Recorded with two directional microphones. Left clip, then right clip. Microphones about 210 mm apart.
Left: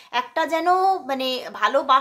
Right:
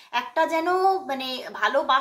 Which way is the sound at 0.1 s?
30° left (ahead or behind).